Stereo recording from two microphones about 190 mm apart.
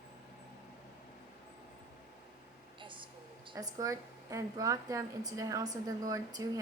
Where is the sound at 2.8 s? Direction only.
25° right (ahead or behind).